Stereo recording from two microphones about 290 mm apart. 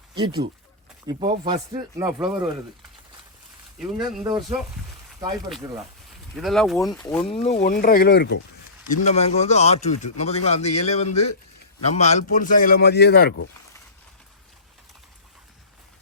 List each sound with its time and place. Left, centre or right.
0.1 s speech: centre
3.8 s speech: centre
4.3 s speech: centre
6.3 s speech: centre
7.3 s speech: left
8.9 s speech: left